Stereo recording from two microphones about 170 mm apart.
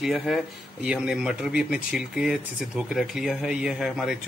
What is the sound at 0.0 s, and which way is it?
Speech, centre (ahead or behind).